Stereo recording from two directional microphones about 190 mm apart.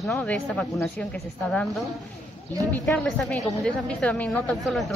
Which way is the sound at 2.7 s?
5° left (ahead or behind).